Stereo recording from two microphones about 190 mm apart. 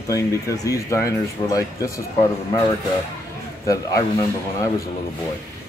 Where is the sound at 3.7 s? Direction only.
15° left (ahead or behind).